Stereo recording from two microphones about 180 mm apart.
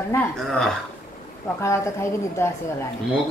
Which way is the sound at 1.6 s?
15° left (ahead or behind).